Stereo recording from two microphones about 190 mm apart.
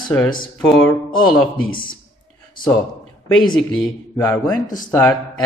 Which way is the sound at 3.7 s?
15° left (ahead or behind).